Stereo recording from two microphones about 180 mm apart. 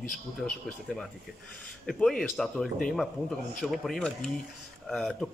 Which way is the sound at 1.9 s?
Centre (ahead or behind).